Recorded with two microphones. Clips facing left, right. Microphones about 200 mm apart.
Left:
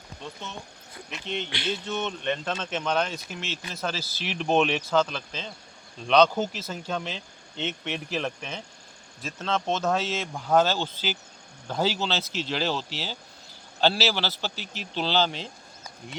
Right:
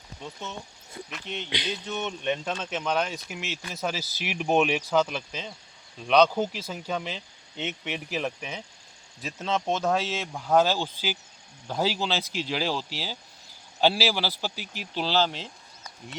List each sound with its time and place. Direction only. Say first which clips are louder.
1.5 s speech: left 2 dB; 20° right (ahead or behind); by 16.1 s centre (ahead or behind)